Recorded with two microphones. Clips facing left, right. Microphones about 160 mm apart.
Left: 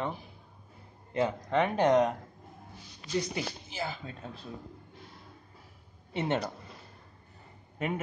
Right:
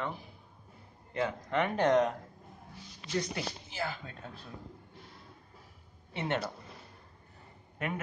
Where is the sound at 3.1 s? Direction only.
15° left (ahead or behind).